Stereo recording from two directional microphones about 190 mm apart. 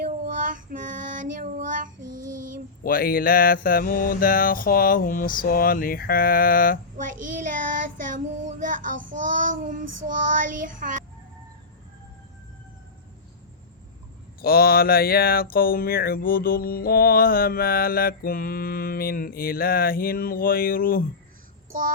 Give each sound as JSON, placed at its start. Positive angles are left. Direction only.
{"t": 0.0, "sound": "child singing", "side_deg": -45}
{"t": 2.8, "sound": "speech", "side_deg": 50}
{"t": 6.9, "sound": "child singing", "side_deg": -45}
{"t": 14.4, "sound": "speech", "side_deg": 50}